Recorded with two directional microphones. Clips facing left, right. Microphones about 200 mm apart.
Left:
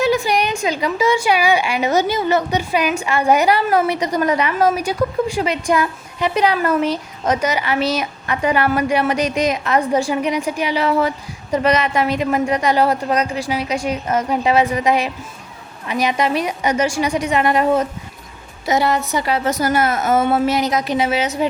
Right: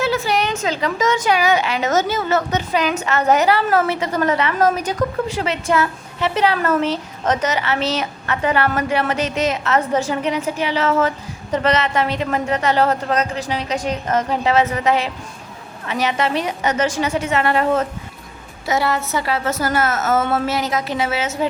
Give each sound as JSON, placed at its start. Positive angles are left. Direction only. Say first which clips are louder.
{"t": 0.0, "sound": "a woman's voice", "louder": "left 2 dB", "side_deg": 15}